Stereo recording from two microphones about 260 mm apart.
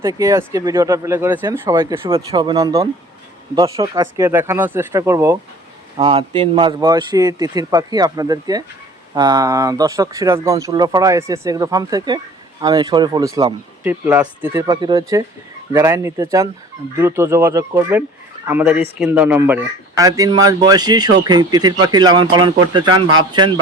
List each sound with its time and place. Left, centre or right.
0.0 s speech: centre